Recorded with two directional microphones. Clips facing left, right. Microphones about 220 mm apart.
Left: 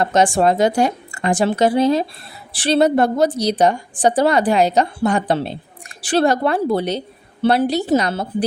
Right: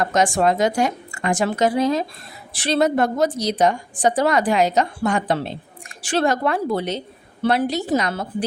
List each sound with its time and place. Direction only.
0.0 s a woman's voice: 30° left (ahead or behind)